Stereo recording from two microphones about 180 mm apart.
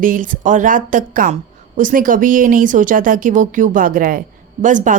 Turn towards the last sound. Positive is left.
turn(degrees=-45)  # may be behind; listen again after turning